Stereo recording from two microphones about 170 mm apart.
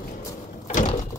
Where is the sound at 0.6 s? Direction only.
45° left (ahead or behind).